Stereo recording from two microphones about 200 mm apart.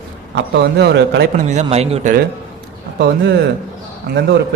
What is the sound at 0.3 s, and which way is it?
Speech, 60° right (ahead or behind).